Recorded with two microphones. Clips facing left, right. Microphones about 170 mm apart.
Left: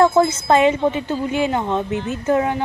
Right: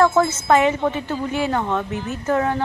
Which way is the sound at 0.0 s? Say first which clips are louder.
Left 2 dB; 20° left (ahead or behind).